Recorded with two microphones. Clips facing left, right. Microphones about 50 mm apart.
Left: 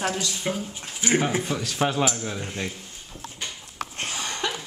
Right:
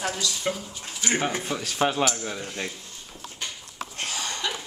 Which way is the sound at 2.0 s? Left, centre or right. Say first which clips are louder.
Left 1 dB; centre.